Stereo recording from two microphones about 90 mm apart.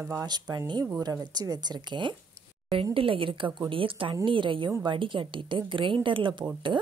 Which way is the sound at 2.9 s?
80° right.